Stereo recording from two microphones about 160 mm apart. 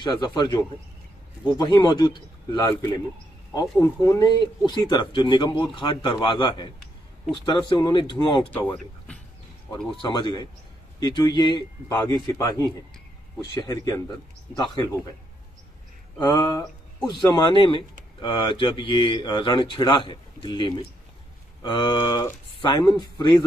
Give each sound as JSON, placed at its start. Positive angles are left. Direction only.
{"t": 0.0, "sound": "speech", "side_deg": 30}
{"t": 8.5, "sound": "speech", "side_deg": 10}
{"t": 10.0, "sound": "speech", "side_deg": 30}
{"t": 12.0, "sound": "speech", "side_deg": 20}
{"t": 16.2, "sound": "speech", "side_deg": 25}